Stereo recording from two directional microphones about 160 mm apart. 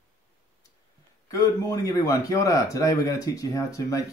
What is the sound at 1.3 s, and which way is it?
Speech, 20° left (ahead or behind).